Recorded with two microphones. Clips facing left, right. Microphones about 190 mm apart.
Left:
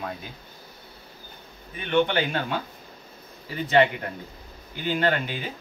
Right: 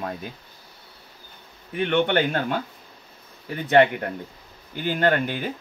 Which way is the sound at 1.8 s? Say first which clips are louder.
Right 2 dB; 65° right (ahead or behind).